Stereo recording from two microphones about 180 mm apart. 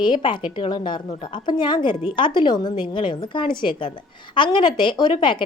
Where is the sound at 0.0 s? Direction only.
25° left (ahead or behind).